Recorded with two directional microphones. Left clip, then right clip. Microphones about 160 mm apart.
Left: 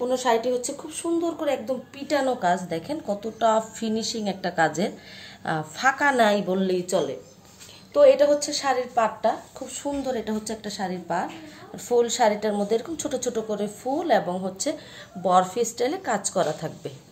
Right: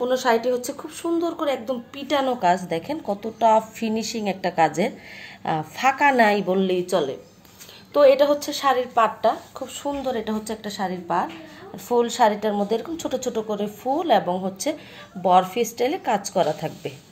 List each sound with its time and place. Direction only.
0.0 s a woman's voice: 20° right (ahead or behind)
9.8 s a woman's voice: 10° right (ahead or behind)